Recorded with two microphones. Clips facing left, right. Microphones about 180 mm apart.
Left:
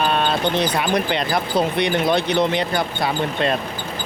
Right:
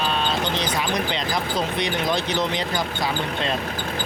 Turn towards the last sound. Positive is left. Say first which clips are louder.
# left 4 dB
turn(degrees=60)  # may be behind; listen again after turning